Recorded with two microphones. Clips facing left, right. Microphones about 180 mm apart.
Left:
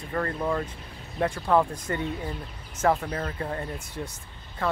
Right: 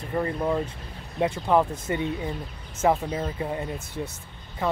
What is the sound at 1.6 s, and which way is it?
Speech, 5° right (ahead or behind).